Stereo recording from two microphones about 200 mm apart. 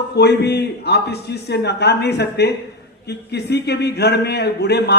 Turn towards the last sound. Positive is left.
turn(degrees=55)  # may be behind; listen again after turning